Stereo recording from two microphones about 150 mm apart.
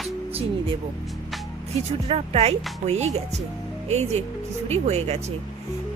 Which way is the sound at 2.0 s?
40° right (ahead or behind).